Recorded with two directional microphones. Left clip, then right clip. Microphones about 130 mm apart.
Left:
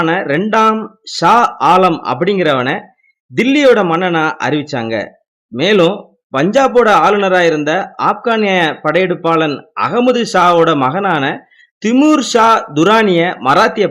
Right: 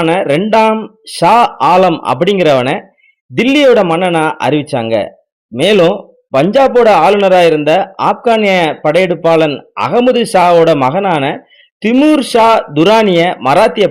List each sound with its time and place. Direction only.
0.0 s a man's voice: 20° right (ahead or behind)